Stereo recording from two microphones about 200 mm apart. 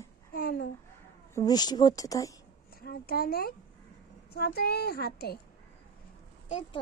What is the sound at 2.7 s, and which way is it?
A child's voice, 50° left (ahead or behind).